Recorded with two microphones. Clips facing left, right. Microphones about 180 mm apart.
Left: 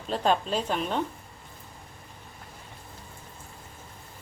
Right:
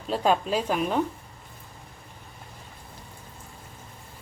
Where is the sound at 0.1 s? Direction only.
10° right (ahead or behind).